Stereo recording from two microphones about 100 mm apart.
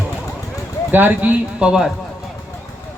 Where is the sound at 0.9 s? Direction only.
20° right (ahead or behind).